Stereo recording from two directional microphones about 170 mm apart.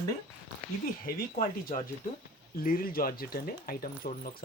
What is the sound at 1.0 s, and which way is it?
Speech, 55° left (ahead or behind).